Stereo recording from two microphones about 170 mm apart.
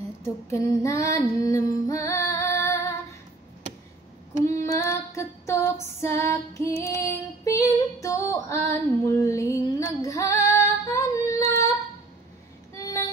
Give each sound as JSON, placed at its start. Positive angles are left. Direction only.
{"t": 0.2, "sound": "female singing", "side_deg": 20}
{"t": 4.3, "sound": "female singing", "side_deg": -45}
{"t": 4.6, "sound": "female singing", "side_deg": 15}
{"t": 12.7, "sound": "a sound", "side_deg": 20}